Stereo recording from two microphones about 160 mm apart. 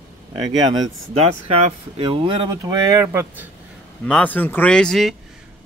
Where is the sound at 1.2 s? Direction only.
40° right (ahead or behind); by 3.4 s 15° right (ahead or behind).